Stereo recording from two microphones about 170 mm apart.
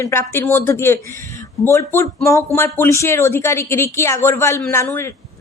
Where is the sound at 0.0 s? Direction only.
15° left (ahead or behind).